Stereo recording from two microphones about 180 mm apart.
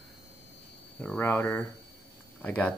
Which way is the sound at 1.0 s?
10° left (ahead or behind).